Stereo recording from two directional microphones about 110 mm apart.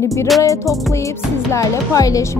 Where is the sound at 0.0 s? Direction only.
25° left (ahead or behind).